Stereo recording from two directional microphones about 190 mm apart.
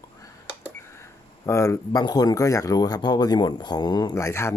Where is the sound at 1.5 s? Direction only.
15° left (ahead or behind).